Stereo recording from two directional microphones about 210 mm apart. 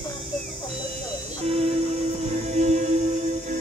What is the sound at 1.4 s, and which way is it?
Music, 30° right (ahead or behind).